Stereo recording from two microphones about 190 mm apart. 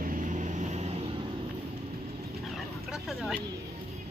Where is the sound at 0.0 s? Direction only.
45° right (ahead or behind).